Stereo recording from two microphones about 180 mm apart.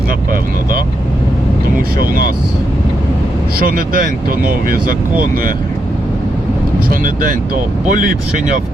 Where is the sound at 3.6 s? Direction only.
55° right (ahead or behind).